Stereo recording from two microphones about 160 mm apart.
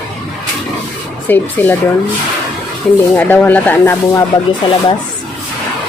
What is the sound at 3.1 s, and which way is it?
Speech, 10° left (ahead or behind).